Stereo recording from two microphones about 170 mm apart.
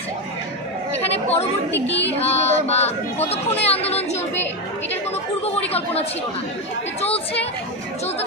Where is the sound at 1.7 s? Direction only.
90° left.